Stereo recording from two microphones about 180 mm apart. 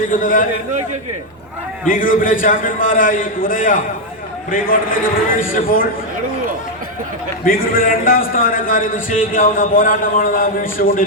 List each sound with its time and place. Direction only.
0.1 s a man's voice: 50° left (ahead or behind)
1.9 s a man's voice: 50° left (ahead or behind)
7.4 s a man's voice: 55° left (ahead or behind)